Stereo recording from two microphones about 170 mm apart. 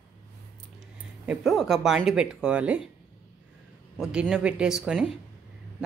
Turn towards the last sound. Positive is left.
turn(degrees=-5)  # may be behind; listen again after turning